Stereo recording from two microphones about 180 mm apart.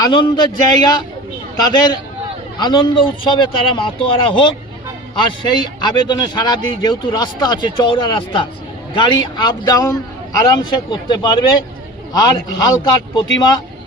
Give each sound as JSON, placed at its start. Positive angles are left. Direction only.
{"t": 0.0, "sound": "a man's voice", "side_deg": 25}